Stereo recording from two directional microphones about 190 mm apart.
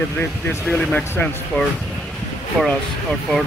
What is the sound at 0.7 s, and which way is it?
Speech, 10° left (ahead or behind).